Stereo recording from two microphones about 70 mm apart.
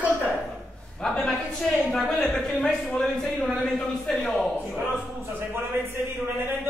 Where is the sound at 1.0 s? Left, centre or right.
Centre.